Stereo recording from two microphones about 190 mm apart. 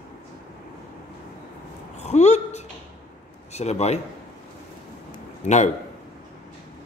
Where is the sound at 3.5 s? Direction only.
35° left (ahead or behind).